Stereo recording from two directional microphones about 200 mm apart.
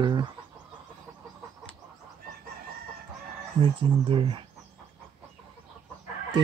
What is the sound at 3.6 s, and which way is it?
Speech, 25° right (ahead or behind).